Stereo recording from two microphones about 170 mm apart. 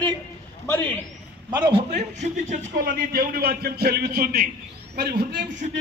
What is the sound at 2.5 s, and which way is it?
Speech, 60° right (ahead or behind).